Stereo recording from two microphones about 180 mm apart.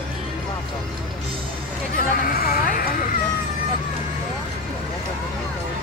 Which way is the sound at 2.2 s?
55° left (ahead or behind).